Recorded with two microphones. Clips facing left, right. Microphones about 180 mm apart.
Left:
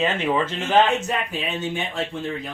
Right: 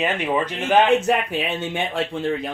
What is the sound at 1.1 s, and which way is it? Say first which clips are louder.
Speech: right 6 dB; 70° right (ahead or behind).